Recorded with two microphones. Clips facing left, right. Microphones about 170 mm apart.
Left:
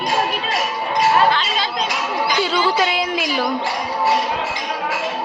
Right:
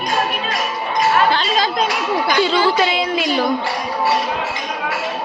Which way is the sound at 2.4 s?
10° left (ahead or behind).